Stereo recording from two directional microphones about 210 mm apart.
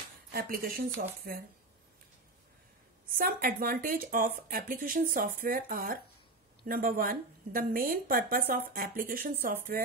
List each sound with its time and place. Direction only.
0.3 s speech: 45° right (ahead or behind)
3.1 s speech: 40° right (ahead or behind)